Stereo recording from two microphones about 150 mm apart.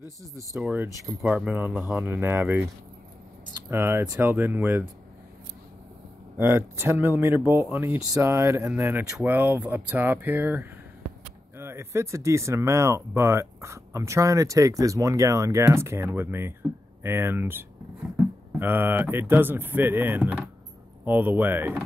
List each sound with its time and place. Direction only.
0.0 s speech: 20° right (ahead or behind)
3.7 s speech: 15° right (ahead or behind)
6.3 s speech: 15° right (ahead or behind)